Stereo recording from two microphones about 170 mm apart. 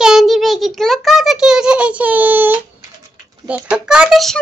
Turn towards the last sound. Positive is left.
turn(degrees=0)  # may be behind; listen again after turning